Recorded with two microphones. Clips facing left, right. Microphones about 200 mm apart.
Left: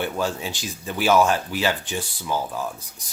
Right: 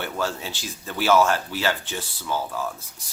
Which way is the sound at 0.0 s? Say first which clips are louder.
Left 3 dB; 15° left (ahead or behind).